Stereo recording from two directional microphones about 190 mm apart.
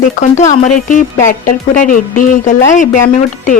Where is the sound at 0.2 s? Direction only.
40° left (ahead or behind).